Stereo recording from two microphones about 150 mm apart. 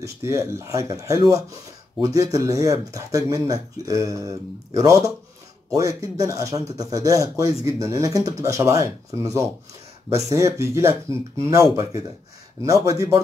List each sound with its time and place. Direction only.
0.0 s speech: 20° right (ahead or behind)